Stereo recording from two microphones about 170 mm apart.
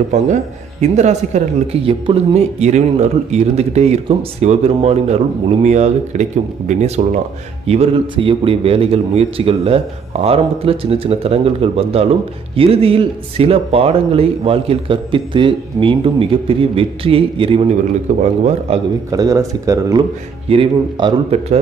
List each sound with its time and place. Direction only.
0.1 s speech: 45° right (ahead or behind)
18.1 s speech: 45° right (ahead or behind)
19.0 s speech: 20° right (ahead or behind)
20.4 s speech: 30° right (ahead or behind)